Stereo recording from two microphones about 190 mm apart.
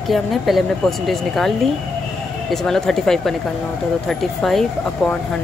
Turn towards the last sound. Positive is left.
turn(degrees=5)  # may be behind; listen again after turning